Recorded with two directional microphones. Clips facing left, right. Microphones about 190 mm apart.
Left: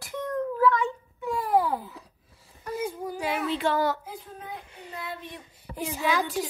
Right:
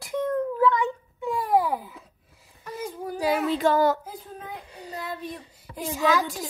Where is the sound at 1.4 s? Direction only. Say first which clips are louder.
Right 1 dB; 15° right (ahead or behind).